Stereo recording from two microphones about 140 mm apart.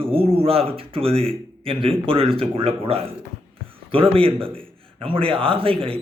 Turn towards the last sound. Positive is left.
turn(degrees=-40)  # may be behind; listen again after turning